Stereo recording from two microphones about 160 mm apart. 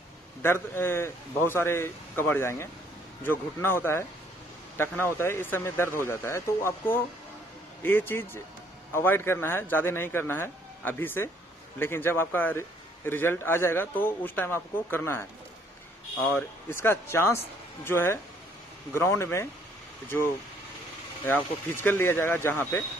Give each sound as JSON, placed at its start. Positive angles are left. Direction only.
{"t": 0.4, "sound": "a man's voice", "side_deg": 15}
{"t": 16.3, "sound": "a man's voice", "side_deg": 15}
{"t": 21.6, "sound": "a man's voice", "side_deg": 15}